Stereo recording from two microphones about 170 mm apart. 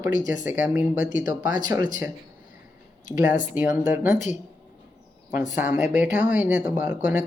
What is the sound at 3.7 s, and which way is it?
Speech, 15° right (ahead or behind).